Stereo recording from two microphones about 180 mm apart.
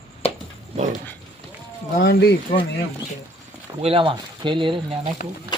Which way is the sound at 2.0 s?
60° left (ahead or behind).